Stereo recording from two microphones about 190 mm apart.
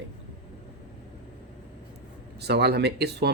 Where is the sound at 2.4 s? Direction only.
60° right (ahead or behind).